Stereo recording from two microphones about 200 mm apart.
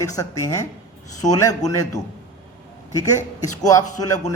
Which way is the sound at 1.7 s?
15° left (ahead or behind).